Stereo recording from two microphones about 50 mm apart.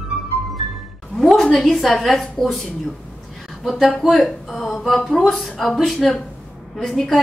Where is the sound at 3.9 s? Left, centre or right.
Centre.